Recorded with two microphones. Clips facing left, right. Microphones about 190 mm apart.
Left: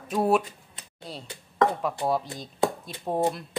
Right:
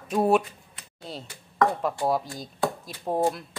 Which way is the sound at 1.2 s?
25° left (ahead or behind).